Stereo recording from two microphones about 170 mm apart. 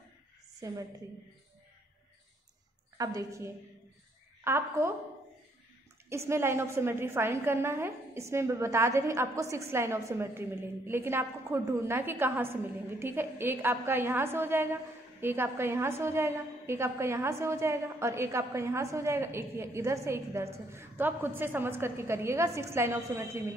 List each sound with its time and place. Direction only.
0.6 s a woman's voice: 20° right (ahead or behind)
3.0 s a woman's voice: 20° right (ahead or behind)
6.0 s a woman's voice: 15° right (ahead or behind)